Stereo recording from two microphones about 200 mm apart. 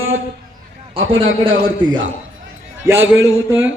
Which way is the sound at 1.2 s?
25° right (ahead or behind).